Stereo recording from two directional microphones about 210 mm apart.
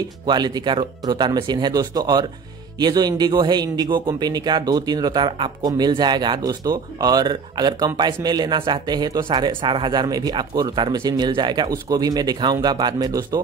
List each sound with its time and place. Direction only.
0.3 s speech: 20° right (ahead or behind)